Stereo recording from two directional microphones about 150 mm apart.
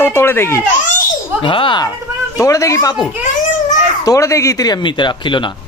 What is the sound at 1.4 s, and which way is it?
Speech, 35° left (ahead or behind).